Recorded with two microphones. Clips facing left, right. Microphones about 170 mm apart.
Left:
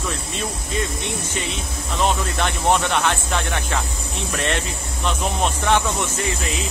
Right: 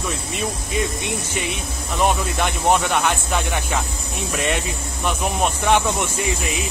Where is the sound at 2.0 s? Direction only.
10° right (ahead or behind).